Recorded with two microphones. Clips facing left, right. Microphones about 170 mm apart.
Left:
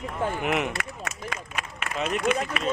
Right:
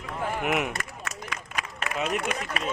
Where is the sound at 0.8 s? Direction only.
65° left (ahead or behind).